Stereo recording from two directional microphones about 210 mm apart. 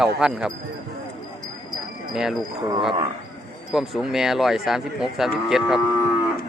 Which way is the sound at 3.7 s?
Centre (ahead or behind).